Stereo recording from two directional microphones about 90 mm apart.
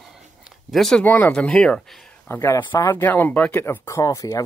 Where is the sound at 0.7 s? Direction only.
5° left (ahead or behind).